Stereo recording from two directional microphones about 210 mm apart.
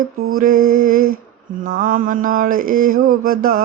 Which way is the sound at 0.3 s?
40° right (ahead or behind).